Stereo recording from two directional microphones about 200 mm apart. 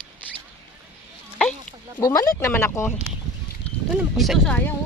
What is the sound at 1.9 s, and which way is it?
Speech, 15° left (ahead or behind).